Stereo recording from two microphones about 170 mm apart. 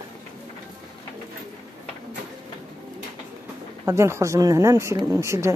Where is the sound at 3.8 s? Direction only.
15° right (ahead or behind).